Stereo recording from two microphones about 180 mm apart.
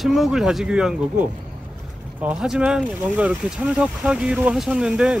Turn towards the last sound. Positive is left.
turn(degrees=-5)  # may be behind; listen again after turning